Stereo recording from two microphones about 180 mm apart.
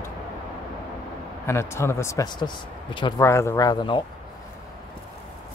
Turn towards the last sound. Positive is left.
turn(degrees=25)  # may be behind; listen again after turning